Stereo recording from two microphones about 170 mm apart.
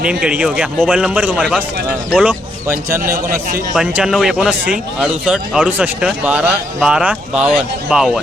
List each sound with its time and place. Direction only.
0.0 s speech: 5° right (ahead or behind)
3.8 s speech: 5° right (ahead or behind)